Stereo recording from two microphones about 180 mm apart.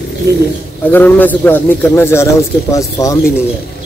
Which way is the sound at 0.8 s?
10° left (ahead or behind).